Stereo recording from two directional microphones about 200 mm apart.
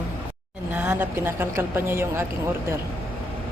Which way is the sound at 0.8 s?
10° right (ahead or behind).